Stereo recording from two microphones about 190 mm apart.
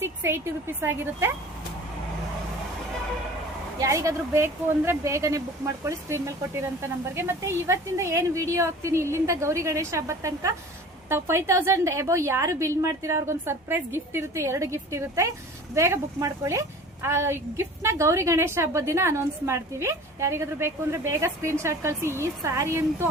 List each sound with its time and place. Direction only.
0.0 s a woman's voice: 10° right (ahead or behind)
3.8 s a woman's voice: 15° right (ahead or behind)